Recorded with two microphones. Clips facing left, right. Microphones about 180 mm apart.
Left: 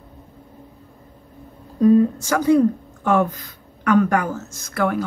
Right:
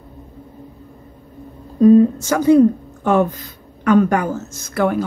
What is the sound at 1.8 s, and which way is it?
A woman's voice, 25° right (ahead or behind).